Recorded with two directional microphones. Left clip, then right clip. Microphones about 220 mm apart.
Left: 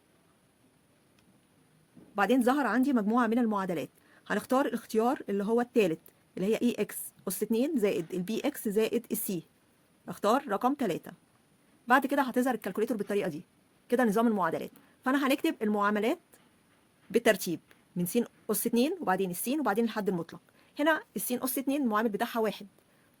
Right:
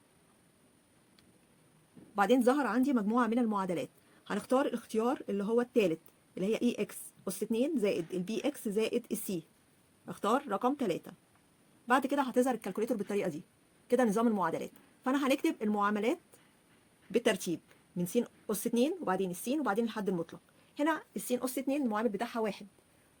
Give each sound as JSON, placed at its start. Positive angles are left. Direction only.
{"t": 2.1, "sound": "a woman's voice", "side_deg": 20}